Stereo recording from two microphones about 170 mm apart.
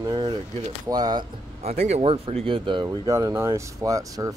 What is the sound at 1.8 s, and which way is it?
Speech, 35° right (ahead or behind).